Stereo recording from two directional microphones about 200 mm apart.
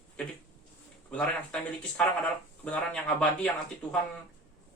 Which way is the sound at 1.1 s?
5° left (ahead or behind).